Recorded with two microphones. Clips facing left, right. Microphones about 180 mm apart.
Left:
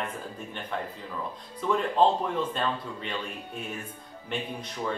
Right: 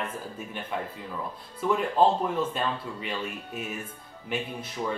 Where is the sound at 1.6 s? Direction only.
5° right (ahead or behind).